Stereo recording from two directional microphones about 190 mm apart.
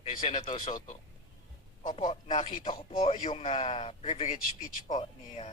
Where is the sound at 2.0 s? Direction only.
35° left (ahead or behind).